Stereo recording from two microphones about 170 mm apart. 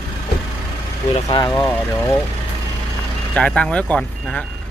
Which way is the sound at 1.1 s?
30° left (ahead or behind).